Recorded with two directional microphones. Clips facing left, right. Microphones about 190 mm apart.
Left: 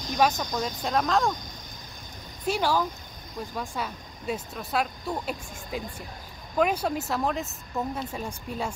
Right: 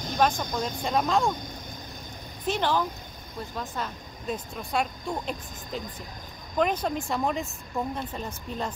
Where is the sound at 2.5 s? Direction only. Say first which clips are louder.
Left 1 dB; 10° left (ahead or behind).